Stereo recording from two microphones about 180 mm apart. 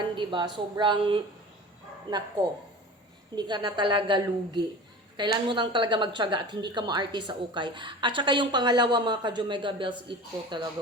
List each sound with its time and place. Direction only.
0.2 s speech: 25° right (ahead or behind)